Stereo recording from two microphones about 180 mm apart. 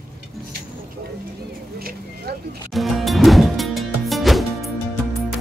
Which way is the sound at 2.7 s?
Centre (ahead or behind).